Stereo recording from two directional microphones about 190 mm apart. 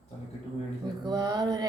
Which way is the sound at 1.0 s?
20° right (ahead or behind).